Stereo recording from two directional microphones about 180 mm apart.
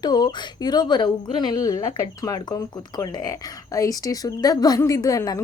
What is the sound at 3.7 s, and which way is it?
Speech, 20° left (ahead or behind).